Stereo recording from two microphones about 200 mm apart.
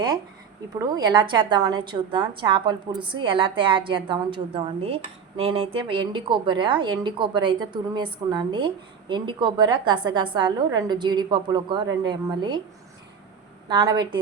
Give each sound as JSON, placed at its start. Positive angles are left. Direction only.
{"t": 0.7, "sound": "a woman's voice", "side_deg": -20}
{"t": 13.7, "sound": "a woman's voice", "side_deg": -20}